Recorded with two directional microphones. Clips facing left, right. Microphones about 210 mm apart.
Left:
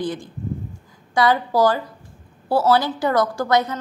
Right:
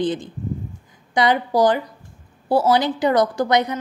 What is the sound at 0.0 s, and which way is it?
A woman's voice, 20° right (ahead or behind).